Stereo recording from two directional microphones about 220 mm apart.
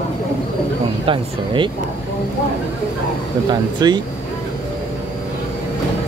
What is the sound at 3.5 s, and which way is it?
Speech, 20° right (ahead or behind).